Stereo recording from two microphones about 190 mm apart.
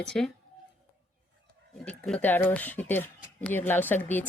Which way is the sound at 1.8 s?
5° left (ahead or behind).